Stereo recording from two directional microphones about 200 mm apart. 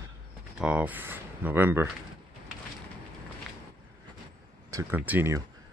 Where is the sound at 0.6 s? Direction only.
5° right (ahead or behind).